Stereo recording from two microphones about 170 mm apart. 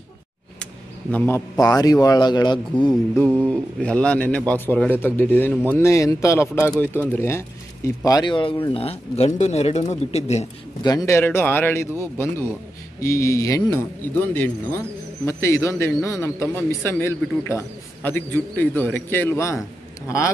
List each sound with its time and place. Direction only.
1.1 s a man's voice: 15° left (ahead or behind)
3.3 s a man's voice: 5° left (ahead or behind); by 10.4 s 40° left (ahead or behind)
10.8 s a man's voice: 20° left (ahead or behind)